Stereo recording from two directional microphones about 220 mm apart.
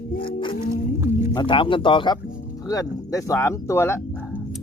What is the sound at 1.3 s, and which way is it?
Speech, 20° left (ahead or behind).